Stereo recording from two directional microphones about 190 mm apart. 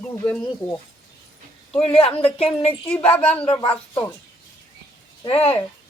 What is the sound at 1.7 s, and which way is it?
A woman's voice, 30° left (ahead or behind).